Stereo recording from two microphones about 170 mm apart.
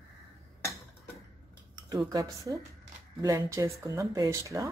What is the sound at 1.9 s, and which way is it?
Speech, 20° right (ahead or behind).